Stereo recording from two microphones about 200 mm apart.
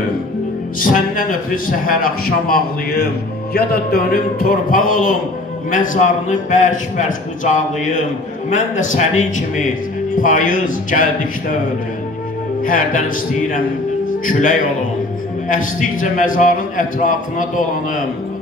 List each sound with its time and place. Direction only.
0.7 s a man's voice: 45° left (ahead or behind)
12.6 s a man's voice: 45° left (ahead or behind)
14.2 s a man's voice: 40° left (ahead or behind)